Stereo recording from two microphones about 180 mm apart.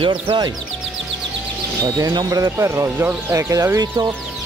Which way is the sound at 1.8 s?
20° right (ahead or behind).